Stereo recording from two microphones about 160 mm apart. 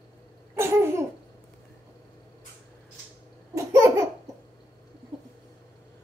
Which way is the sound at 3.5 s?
20° right (ahead or behind).